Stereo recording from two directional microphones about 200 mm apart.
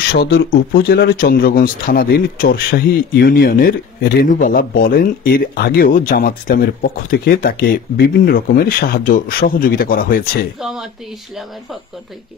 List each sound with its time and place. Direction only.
0.1 s speech: 50° left (ahead or behind)
10.6 s speech: centre (ahead or behind)